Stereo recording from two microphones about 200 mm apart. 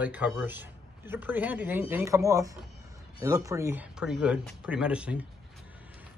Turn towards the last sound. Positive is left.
turn(degrees=-5)  # may be behind; listen again after turning